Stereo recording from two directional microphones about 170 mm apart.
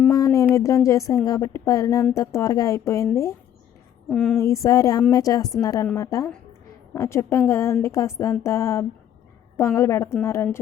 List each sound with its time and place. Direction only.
0.1 s a sound: 20° left (ahead or behind)
0.5 s a woman's voice: 20° left (ahead or behind)
4.1 s speech: 5° left (ahead or behind)
4.4 s a woman's voice: 20° left (ahead or behind)